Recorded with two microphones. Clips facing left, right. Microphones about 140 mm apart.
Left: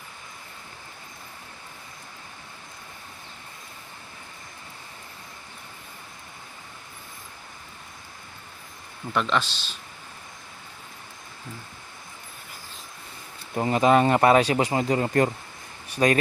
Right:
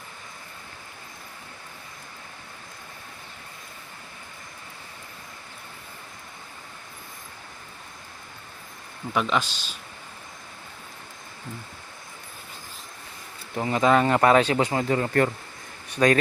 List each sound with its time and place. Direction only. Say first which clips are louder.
9.1 s speech: even; 10° right (ahead or behind)
13.7 s speech: left 1 dB; 25° left (ahead or behind)
14.3 s speech: even; 15° left (ahead or behind)